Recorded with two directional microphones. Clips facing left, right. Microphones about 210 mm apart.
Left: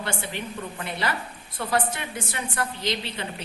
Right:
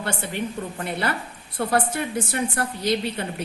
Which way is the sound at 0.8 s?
50° right (ahead or behind).